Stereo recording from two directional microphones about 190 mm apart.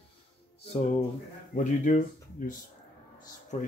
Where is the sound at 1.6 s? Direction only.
45° left (ahead or behind).